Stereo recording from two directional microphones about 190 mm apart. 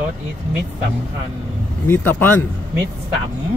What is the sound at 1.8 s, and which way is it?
Speech, 10° left (ahead or behind).